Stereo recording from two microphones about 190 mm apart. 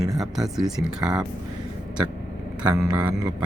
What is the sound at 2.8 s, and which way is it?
Speech, 15° right (ahead or behind).